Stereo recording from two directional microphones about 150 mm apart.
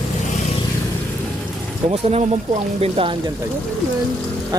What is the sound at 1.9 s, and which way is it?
Speech, 45° right (ahead or behind).